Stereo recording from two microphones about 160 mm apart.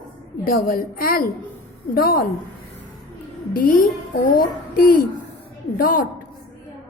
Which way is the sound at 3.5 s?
60° left (ahead or behind).